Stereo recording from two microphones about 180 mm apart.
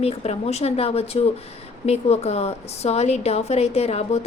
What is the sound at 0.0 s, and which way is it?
A woman's voice, 35° left (ahead or behind).